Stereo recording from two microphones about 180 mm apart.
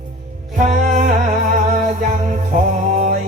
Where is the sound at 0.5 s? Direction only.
45° right (ahead or behind).